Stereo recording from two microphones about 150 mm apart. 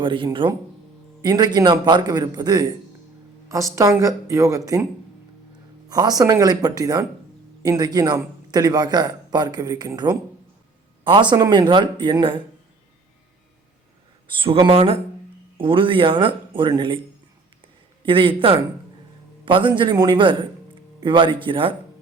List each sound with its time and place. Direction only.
0.0 s a man's voice: 30° right (ahead or behind)
3.8 s a man's voice: 20° right (ahead or behind)
5.9 s a man's voice: 25° right (ahead or behind)
14.3 s speech: 35° right (ahead or behind)
18.0 s speech: 35° right (ahead or behind)